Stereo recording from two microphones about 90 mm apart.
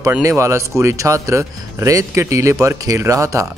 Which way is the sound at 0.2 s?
35° right (ahead or behind).